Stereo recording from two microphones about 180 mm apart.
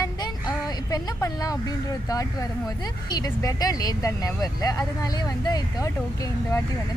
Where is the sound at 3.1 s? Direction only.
20° left (ahead or behind).